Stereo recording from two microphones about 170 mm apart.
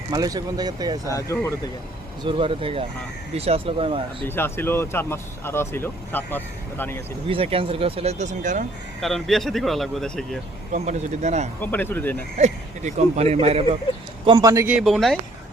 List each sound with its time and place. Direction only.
0.1 s speech: 20° right (ahead or behind)
1.1 s speech: 20° left (ahead or behind)
2.2 s speech: 30° right (ahead or behind)
4.3 s speech: 15° left (ahead or behind)
7.3 s speech: 35° right (ahead or behind)
9.0 s speech: centre (ahead or behind)
10.7 s speech: 45° right (ahead or behind)
11.6 s speech: 10° left (ahead or behind)
12.4 s speech: 40° right (ahead or behind)
14.3 s a man's voice: 20° right (ahead or behind); by 15.2 s centre (ahead or behind)